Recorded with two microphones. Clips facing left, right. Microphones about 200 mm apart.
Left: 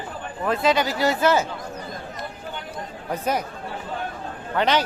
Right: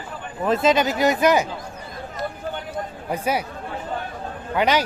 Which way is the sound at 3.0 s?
10° right (ahead or behind).